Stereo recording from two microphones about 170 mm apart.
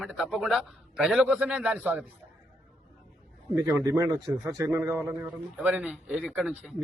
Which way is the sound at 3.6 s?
15° right (ahead or behind).